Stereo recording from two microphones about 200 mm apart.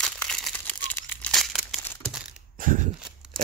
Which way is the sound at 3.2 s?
5° right (ahead or behind).